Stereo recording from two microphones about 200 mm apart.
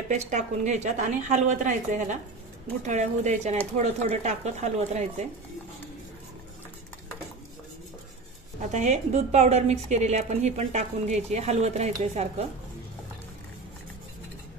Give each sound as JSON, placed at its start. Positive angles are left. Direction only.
{"t": 0.1, "sound": "a woman's voice", "side_deg": -35}
{"t": 8.7, "sound": "a woman's voice", "side_deg": -35}